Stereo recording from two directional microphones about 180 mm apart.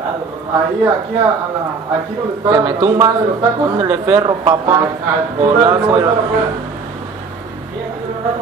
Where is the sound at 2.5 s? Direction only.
15° right (ahead or behind).